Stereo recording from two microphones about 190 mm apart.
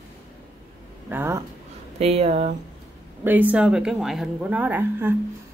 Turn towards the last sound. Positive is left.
turn(degrees=-10)  # may be behind; listen again after turning